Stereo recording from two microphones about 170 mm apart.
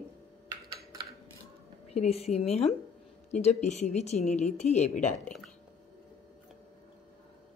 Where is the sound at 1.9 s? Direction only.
35° left (ahead or behind).